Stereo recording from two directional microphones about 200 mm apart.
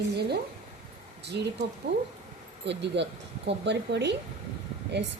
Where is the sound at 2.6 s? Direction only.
60° right (ahead or behind).